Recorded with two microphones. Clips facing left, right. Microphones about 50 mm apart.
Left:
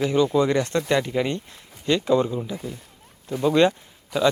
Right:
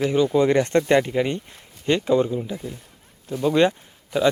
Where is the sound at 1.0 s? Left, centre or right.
Centre.